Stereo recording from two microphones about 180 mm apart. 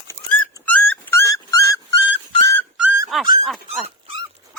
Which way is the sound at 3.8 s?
30° right (ahead or behind).